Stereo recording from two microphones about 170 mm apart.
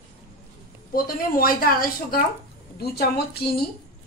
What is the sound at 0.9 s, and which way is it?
A woman's voice, 60° left (ahead or behind).